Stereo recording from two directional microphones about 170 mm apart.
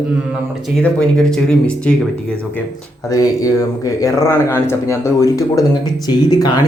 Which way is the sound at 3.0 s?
20° left (ahead or behind).